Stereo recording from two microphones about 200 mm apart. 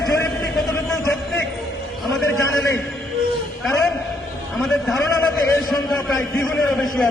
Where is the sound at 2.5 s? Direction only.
15° left (ahead or behind).